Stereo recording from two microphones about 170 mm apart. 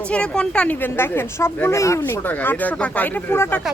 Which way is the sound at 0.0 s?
5° left (ahead or behind).